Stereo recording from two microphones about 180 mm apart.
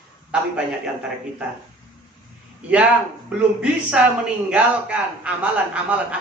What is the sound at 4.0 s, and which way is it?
A man's voice, 5° right (ahead or behind).